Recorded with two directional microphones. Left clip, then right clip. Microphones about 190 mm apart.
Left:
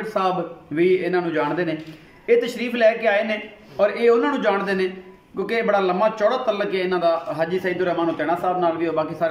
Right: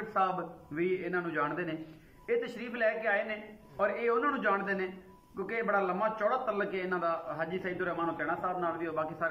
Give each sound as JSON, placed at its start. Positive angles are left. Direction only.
{"t": 0.7, "sound": "a man's voice", "side_deg": 25}